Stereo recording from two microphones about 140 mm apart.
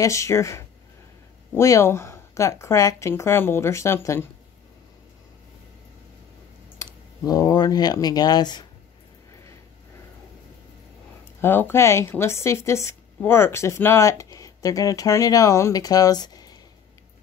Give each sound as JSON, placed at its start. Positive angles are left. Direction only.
{"t": 0.0, "sound": "a woman's voice", "side_deg": 20}
{"t": 6.8, "sound": "speech", "side_deg": 25}
{"t": 11.4, "sound": "a woman's voice", "side_deg": 15}